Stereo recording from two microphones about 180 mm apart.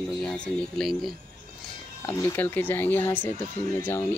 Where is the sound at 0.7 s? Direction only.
Centre (ahead or behind).